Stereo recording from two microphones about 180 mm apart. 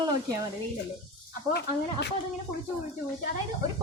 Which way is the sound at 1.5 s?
70° left (ahead or behind).